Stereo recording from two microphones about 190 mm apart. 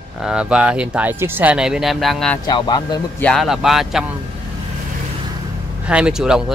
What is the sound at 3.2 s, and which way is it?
Speech, centre (ahead or behind).